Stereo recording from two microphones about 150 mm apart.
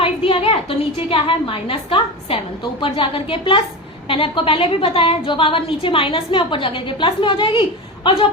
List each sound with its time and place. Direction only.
0.0 s a woman's voice: 40° left (ahead or behind)